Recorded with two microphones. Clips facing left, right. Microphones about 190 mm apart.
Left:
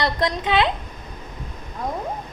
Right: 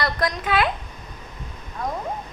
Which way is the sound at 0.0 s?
25° left (ahead or behind).